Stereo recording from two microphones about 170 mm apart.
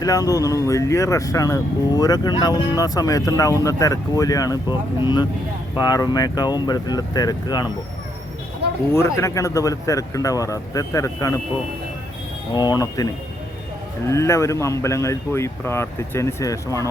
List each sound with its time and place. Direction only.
0.0 s speech: 20° left (ahead or behind)
5.7 s speech: 25° left (ahead or behind)
8.9 s speech: 15° left (ahead or behind)
12.5 s speech: 25° left (ahead or behind)
14.1 s speech: 15° left (ahead or behind)